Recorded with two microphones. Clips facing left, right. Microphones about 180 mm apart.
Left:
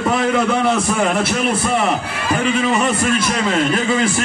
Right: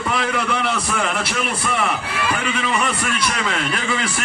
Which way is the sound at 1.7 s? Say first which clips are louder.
Left 4 dB; 40° left (ahead or behind).